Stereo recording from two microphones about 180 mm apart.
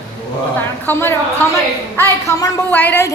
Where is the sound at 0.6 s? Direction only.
10° left (ahead or behind).